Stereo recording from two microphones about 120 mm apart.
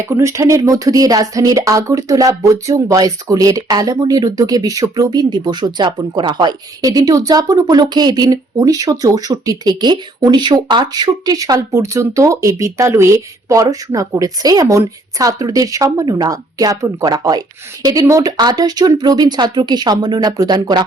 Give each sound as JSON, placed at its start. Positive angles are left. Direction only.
{"t": 0.0, "sound": "speech", "side_deg": -20}